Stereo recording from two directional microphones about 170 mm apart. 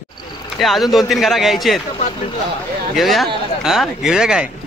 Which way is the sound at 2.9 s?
Centre (ahead or behind).